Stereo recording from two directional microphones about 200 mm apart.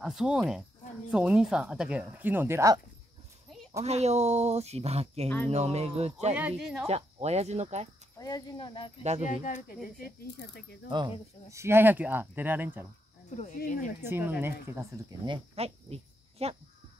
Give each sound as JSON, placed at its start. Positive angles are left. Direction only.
{"t": 0.0, "sound": "a woman's voice", "side_deg": -5}
{"t": 3.8, "sound": "speech", "side_deg": -35}
{"t": 6.3, "sound": "a woman's voice", "side_deg": -5}
{"t": 6.9, "sound": "speech", "side_deg": -30}
{"t": 8.2, "sound": "speech", "side_deg": 20}
{"t": 9.2, "sound": "speech", "side_deg": 40}
{"t": 11.5, "sound": "speech", "side_deg": -10}
{"t": 13.6, "sound": "speech", "side_deg": 40}
{"t": 14.0, "sound": "speech", "side_deg": -10}
{"t": 15.2, "sound": "cricket", "side_deg": -25}